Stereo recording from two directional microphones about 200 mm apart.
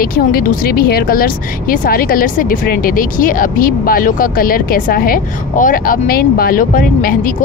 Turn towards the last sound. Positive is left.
turn(degrees=45)  # may be behind; listen again after turning